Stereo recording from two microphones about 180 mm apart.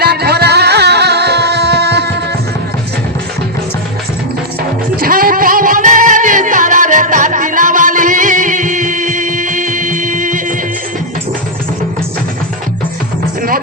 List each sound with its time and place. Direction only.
0.0 s music: 60° right (ahead or behind)
4.9 s music: 55° right (ahead or behind)